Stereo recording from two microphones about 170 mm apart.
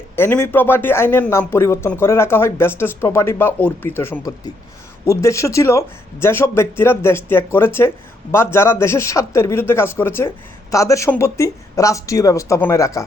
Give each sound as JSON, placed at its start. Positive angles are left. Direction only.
{"t": 0.2, "sound": "speech", "side_deg": 15}